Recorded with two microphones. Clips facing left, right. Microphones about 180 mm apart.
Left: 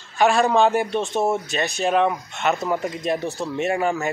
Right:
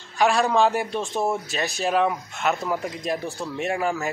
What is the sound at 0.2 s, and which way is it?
Speech, centre (ahead or behind).